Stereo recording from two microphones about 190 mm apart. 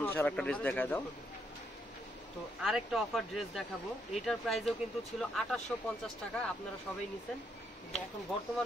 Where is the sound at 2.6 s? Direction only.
5° right (ahead or behind).